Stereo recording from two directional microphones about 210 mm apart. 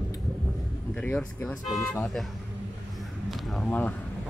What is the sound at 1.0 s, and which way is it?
Speech, 5° left (ahead or behind).